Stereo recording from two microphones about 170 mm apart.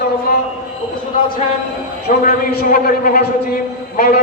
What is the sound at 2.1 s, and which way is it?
A man's voice, 55° left (ahead or behind).